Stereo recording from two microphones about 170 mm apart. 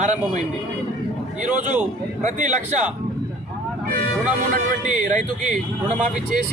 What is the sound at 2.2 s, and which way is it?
Speech, 45° right (ahead or behind).